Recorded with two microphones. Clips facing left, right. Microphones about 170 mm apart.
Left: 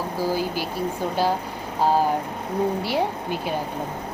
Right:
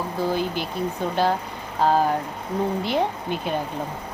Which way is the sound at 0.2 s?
5° left (ahead or behind).